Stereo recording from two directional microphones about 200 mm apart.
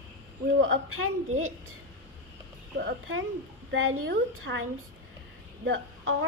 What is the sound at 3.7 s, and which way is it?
Speech, 85° right.